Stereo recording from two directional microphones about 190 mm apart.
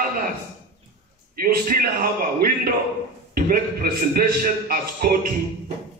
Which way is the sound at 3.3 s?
50° right (ahead or behind).